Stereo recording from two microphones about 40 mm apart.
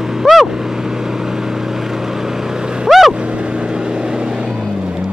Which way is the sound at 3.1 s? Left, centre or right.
Right.